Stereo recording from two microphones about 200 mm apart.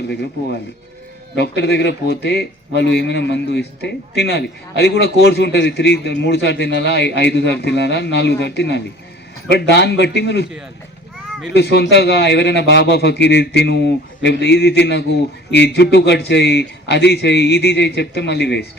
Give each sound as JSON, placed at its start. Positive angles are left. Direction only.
{"t": 1.4, "sound": "a man's voice", "side_deg": 60}
{"t": 11.5, "sound": "a man's voice", "side_deg": 55}